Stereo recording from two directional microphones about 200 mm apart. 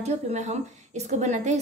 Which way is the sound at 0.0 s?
35° right (ahead or behind).